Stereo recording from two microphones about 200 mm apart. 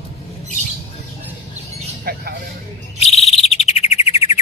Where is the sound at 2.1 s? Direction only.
50° right (ahead or behind).